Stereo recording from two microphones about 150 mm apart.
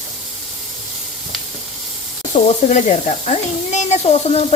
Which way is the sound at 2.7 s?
50° left (ahead or behind).